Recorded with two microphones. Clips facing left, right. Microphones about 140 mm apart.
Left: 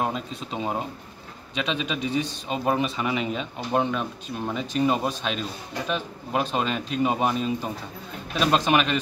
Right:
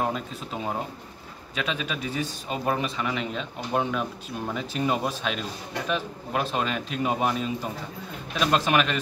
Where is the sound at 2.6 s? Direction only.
10° left (ahead or behind).